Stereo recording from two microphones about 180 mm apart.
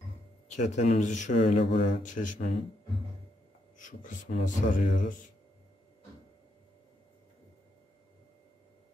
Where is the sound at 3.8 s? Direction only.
45° left (ahead or behind).